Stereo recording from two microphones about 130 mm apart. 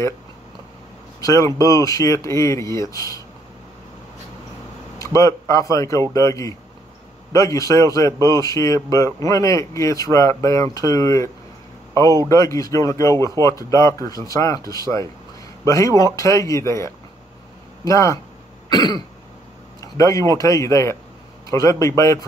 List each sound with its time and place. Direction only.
1.2 s speech: 25° left (ahead or behind)
4.9 s speech: 25° left (ahead or behind)
18.7 s cough: 30° left (ahead or behind)
19.8 s speech: 25° left (ahead or behind)